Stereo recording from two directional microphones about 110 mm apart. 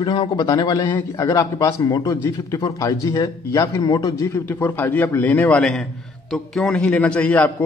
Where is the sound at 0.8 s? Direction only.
25° left (ahead or behind).